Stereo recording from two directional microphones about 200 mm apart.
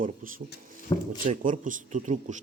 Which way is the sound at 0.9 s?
25° left (ahead or behind).